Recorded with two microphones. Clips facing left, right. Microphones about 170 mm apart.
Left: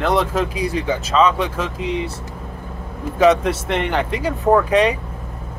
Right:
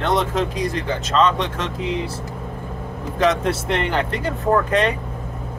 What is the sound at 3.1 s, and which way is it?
Speech, centre (ahead or behind).